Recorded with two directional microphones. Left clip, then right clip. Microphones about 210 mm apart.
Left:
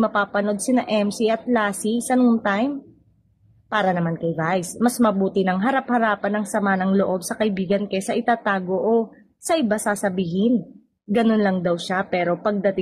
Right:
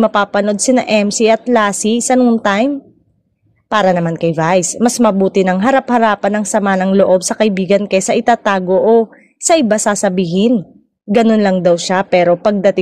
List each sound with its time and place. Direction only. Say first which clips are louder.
0.0 s a woman's voice: right 8 dB; 40° right (ahead or behind)
3.7 s a woman's voice: right 9 dB; 40° right (ahead or behind)